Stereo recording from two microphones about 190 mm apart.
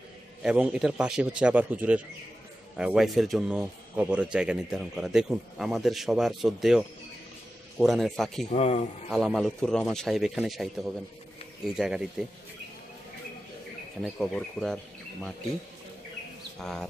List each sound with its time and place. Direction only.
0.4 s a man's voice: 5° right (ahead or behind)
7.8 s a man's voice: centre (ahead or behind)
8.5 s speech: 35° left (ahead or behind)
9.1 s a man's voice: centre (ahead or behind)
14.0 s a man's voice: 5° left (ahead or behind)